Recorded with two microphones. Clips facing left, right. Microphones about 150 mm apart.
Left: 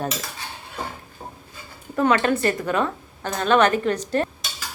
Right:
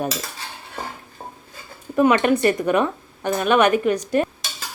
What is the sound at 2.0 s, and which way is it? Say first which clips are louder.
Dishes: right 3 dB; 15° right (ahead or behind).